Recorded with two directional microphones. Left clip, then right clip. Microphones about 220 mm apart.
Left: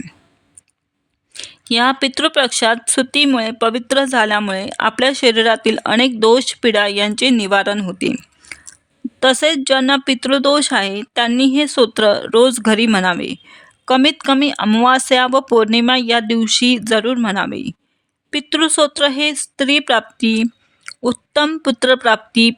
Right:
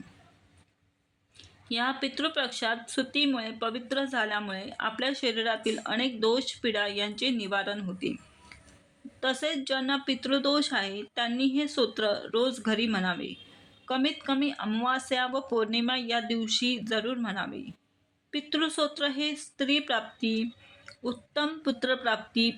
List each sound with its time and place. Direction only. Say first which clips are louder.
1.3 s speech: left 16 dB; 55° left (ahead or behind)